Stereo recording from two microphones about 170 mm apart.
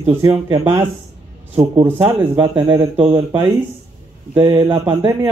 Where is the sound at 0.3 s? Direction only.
30° right (ahead or behind).